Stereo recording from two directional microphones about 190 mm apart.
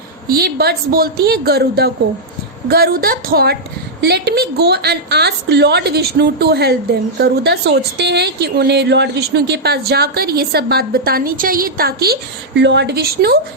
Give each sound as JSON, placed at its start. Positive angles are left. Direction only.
{"t": 0.3, "sound": "a woman's voice", "side_deg": -55}